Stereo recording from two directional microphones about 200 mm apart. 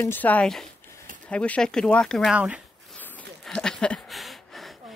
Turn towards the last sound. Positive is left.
turn(degrees=0)  # may be behind; listen again after turning